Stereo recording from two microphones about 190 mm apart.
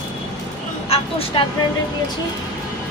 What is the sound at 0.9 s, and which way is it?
Speech, 30° left (ahead or behind).